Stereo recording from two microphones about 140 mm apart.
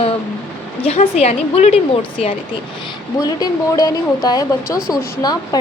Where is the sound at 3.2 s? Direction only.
30° left (ahead or behind).